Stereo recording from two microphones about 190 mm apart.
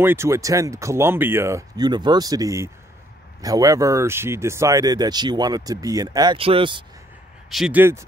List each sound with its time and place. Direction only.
0.0 s speech: 15° right (ahead or behind)
7.4 s speech: centre (ahead or behind)